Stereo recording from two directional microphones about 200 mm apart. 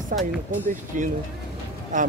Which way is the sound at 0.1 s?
45° right (ahead or behind).